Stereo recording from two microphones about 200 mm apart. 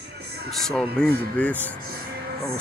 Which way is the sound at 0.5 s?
Centre (ahead or behind).